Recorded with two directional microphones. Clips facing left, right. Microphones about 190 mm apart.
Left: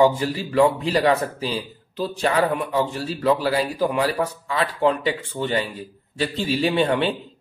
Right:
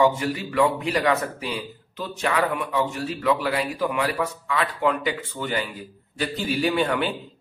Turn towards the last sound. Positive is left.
turn(degrees=30)  # may be behind; listen again after turning